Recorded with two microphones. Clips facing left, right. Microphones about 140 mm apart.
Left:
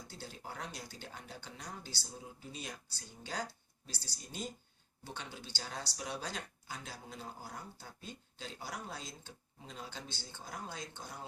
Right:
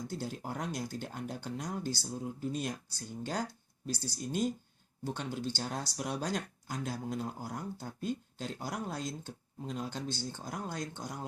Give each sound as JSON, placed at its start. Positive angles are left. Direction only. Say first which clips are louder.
{"t": 0.1, "sound": "speech", "louder": "right 9 dB", "side_deg": -45}